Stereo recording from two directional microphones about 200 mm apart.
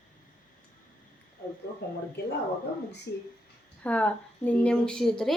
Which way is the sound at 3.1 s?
15° left (ahead or behind).